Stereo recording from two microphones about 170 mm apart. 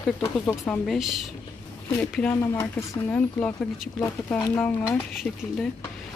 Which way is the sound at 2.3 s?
15° left (ahead or behind).